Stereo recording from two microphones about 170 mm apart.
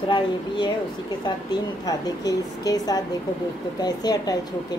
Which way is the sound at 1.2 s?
25° left (ahead or behind).